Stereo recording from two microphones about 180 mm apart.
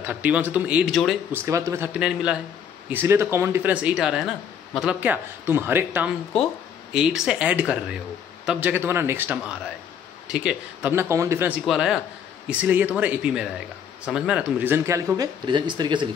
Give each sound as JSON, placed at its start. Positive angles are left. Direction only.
{"t": 0.0, "sound": "speech", "side_deg": -10}
{"t": 1.3, "sound": "speech", "side_deg": -15}
{"t": 2.0, "sound": "speech", "side_deg": -5}